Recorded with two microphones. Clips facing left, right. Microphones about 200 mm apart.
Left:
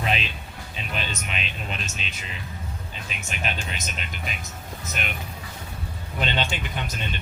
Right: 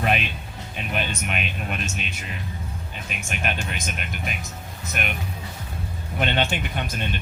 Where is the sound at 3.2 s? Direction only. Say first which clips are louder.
Right 3 dB; 55° right (ahead or behind).